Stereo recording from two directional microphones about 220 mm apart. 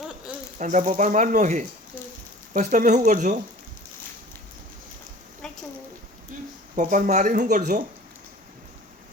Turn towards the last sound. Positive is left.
turn(degrees=-35)  # may be behind; listen again after turning